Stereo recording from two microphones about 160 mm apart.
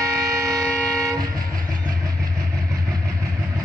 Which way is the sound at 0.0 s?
20° right (ahead or behind).